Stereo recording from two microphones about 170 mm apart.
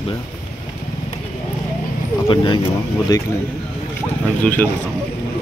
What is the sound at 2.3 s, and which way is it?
Speech, 30° left (ahead or behind).